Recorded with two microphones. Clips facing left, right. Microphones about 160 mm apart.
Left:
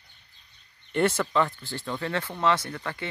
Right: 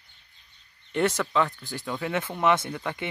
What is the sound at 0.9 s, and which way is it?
Speech, 5° left (ahead or behind).